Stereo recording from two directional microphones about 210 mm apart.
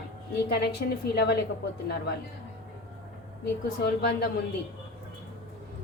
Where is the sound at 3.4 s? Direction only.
50° left (ahead or behind).